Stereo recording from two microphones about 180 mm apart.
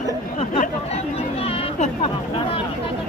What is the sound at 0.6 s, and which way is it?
Speech, 35° left (ahead or behind).